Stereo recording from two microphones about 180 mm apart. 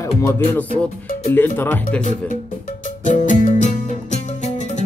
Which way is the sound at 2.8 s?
45° left (ahead or behind).